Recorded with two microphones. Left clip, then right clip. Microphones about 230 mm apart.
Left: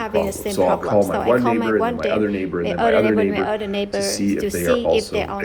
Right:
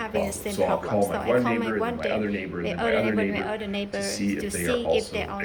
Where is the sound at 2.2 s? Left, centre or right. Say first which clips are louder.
Left 8 dB; left.